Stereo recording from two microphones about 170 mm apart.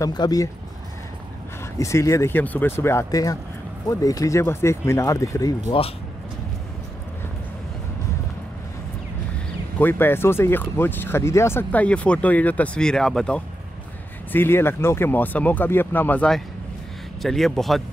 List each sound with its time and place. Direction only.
0.0 s speech: 25° left (ahead or behind)
1.8 s speech: 15° left (ahead or behind)
5.7 s speech: 35° left (ahead or behind)
9.8 s a man's voice: 10° left (ahead or behind)